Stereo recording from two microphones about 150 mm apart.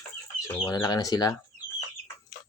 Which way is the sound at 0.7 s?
25° left (ahead or behind).